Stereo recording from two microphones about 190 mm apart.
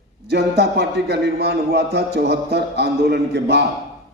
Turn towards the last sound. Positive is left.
turn(degrees=-60)  # may be behind; listen again after turning